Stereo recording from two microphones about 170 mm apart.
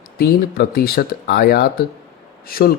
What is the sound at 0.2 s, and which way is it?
Speech, 65° left (ahead or behind).